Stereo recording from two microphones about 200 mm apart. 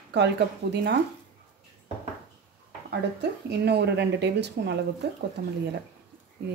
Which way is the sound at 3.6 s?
55° right (ahead or behind).